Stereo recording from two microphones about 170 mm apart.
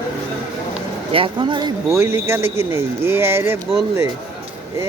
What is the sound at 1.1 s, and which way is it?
Speech, 30° right (ahead or behind).